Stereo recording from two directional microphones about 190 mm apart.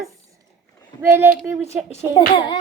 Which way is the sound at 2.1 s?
25° left (ahead or behind).